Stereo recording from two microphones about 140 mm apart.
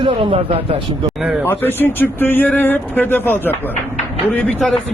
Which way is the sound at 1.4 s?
15° left (ahead or behind).